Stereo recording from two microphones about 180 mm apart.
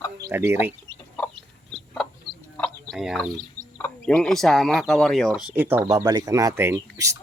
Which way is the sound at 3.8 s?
10° left (ahead or behind).